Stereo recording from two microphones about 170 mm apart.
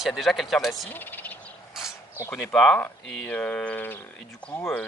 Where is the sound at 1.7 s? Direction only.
5° right (ahead or behind).